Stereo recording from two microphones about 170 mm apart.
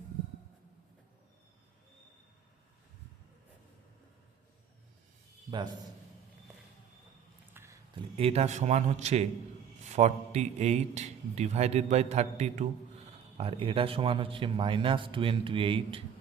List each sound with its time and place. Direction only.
5.5 s a man's voice: 30° right (ahead or behind)
7.5 s a sound: 15° right (ahead or behind)
8.2 s a man's voice: 40° right (ahead or behind)